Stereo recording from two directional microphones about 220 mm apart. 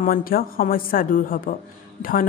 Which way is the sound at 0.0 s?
40° left (ahead or behind).